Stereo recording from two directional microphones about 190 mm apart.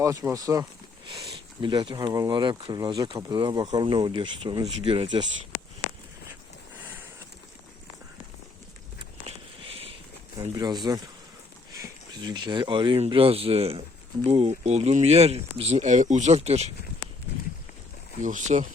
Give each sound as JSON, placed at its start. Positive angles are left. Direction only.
{"t": 0.0, "sound": "speech", "side_deg": -15}
{"t": 9.0, "sound": "a sound", "side_deg": -30}
{"t": 10.5, "sound": "speech", "side_deg": -20}
{"t": 18.2, "sound": "speech", "side_deg": -40}